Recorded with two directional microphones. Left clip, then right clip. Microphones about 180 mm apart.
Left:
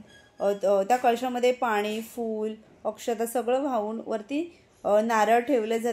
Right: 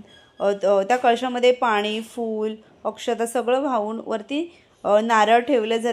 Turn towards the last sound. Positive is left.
turn(degrees=-20)  # may be behind; listen again after turning